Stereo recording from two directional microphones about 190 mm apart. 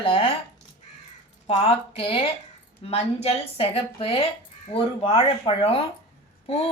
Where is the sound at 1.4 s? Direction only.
30° left (ahead or behind).